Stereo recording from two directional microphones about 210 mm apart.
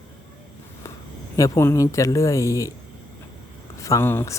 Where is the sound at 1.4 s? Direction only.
15° left (ahead or behind).